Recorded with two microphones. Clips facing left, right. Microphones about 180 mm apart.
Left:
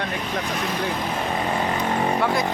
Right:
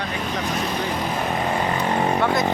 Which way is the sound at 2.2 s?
10° left (ahead or behind).